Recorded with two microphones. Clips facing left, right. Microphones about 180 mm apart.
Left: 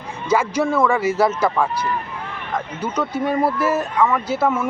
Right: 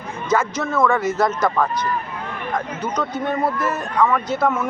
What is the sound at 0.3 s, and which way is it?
Speech, 10° left (ahead or behind).